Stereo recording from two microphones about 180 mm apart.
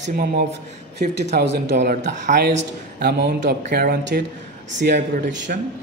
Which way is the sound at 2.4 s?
60° right (ahead or behind).